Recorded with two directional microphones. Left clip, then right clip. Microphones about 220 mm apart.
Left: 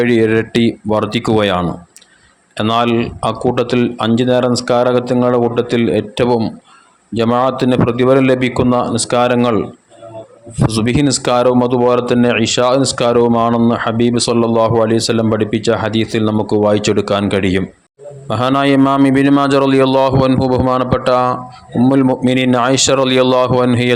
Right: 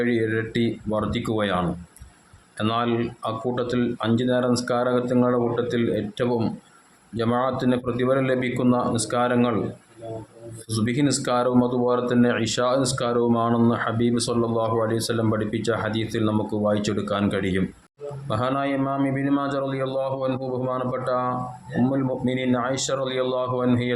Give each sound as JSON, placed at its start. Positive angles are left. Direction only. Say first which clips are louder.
{"t": 0.0, "sound": "a man's voice", "louder": "left 11 dB", "side_deg": 30}
{"t": 10.7, "sound": "a man's voice", "louder": "left 8 dB", "side_deg": 30}